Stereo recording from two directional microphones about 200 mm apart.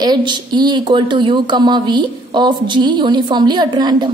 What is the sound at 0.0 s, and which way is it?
Speech, 20° right (ahead or behind).